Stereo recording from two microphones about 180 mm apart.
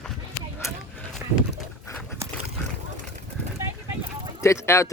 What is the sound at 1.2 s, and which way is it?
Livestock, 15° right (ahead or behind).